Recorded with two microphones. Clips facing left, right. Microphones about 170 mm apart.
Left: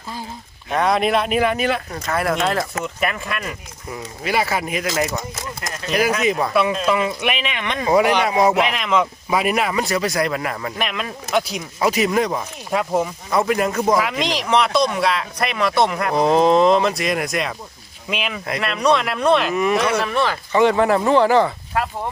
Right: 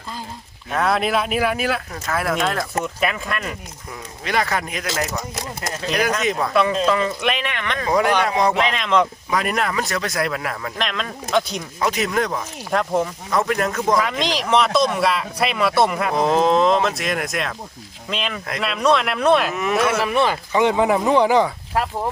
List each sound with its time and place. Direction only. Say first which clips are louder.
0.7 s speech: left 2 dB; centre (ahead or behind)
20.1 s speech: even; 15° right (ahead or behind)